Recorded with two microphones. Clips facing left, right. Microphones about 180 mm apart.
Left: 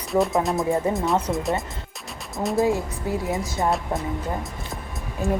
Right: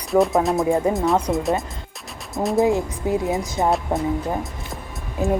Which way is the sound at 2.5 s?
20° right (ahead or behind).